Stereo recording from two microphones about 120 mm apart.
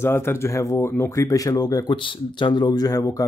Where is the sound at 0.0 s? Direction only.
20° left (ahead or behind).